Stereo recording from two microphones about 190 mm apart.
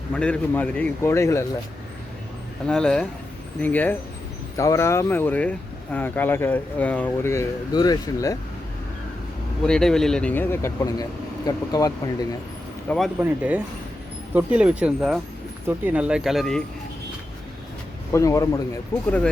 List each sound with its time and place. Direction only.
0.2 s speech: 5° left (ahead or behind)
2.6 s speech: 5° left (ahead or behind)
9.6 s speech: 5° left (ahead or behind); by 11.9 s 20° left (ahead or behind)
13.1 s speech: 10° right (ahead or behind)
18.1 s speech: 15° left (ahead or behind)